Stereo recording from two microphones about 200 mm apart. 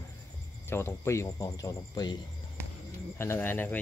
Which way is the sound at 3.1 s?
10° left (ahead or behind).